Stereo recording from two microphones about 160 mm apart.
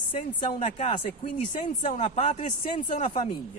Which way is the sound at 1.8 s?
45° left (ahead or behind).